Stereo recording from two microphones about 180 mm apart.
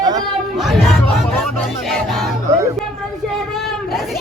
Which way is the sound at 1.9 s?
Centre (ahead or behind).